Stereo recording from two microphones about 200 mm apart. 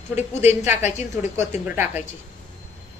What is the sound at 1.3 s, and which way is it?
Speech, 10° right (ahead or behind).